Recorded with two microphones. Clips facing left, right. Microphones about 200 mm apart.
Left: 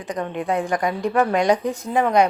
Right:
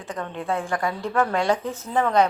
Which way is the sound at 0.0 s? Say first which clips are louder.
Left 5 dB; 15° left (ahead or behind).